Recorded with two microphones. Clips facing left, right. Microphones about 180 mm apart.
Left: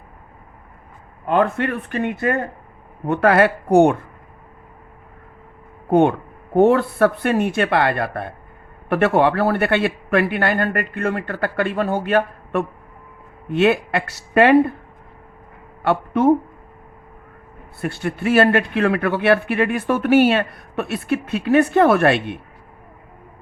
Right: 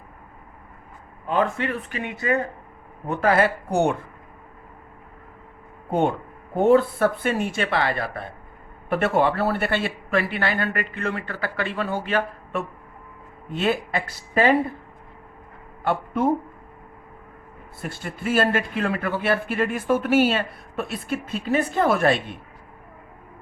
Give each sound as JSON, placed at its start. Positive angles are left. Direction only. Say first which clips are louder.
{"t": 1.3, "sound": "speech", "louder": "left 5 dB", "side_deg": 60}
{"t": 5.9, "sound": "a man's voice", "louder": "left 7 dB", "side_deg": 65}
{"t": 13.5, "sound": "speech", "louder": "left 7 dB", "side_deg": 70}
{"t": 15.8, "sound": "speech", "louder": "left 5 dB", "side_deg": 75}
{"t": 17.7, "sound": "speech", "louder": "left 9 dB", "side_deg": 65}